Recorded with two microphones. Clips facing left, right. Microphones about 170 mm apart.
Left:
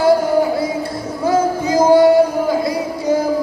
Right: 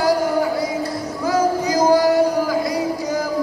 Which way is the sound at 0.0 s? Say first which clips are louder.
Left 4 dB; 25° left (ahead or behind).